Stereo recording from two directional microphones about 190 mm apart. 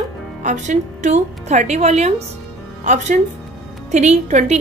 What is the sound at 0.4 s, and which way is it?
A woman's voice, 40° right (ahead or behind).